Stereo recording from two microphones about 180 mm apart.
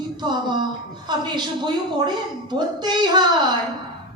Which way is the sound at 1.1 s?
25° right (ahead or behind).